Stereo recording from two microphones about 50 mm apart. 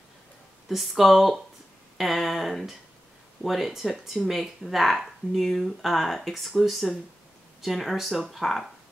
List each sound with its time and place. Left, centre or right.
0.7 s speech: centre